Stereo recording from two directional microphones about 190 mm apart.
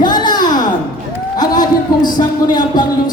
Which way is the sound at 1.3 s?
20° left (ahead or behind).